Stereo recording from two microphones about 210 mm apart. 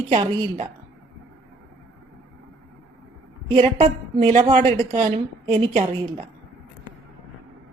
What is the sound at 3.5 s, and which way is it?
Speech, 30° right (ahead or behind).